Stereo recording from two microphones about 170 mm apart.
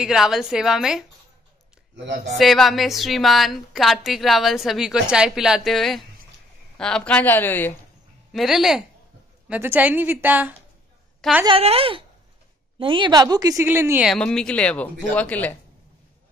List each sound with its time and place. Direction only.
0.0 s a woman's voice: centre (ahead or behind)
2.2 s a woman's voice: centre (ahead or behind)
8.3 s a woman's voice: centre (ahead or behind)
11.4 s a woman's voice: 35° right (ahead or behind); by 14.0 s 15° right (ahead or behind)
14.0 s a woman's voice: 5° left (ahead or behind)